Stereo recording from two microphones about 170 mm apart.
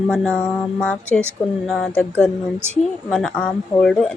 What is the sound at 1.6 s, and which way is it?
Speech, centre (ahead or behind).